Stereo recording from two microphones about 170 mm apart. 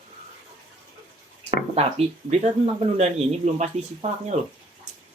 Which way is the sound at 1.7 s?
35° right (ahead or behind).